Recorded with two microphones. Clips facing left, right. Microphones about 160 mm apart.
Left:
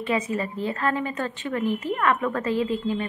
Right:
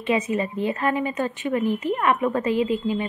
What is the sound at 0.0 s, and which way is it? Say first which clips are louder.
A woman's voice: right 3 dB; 20° right (ahead or behind).